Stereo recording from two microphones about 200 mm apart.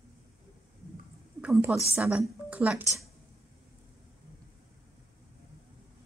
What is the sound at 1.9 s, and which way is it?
Speech, 5° right (ahead or behind).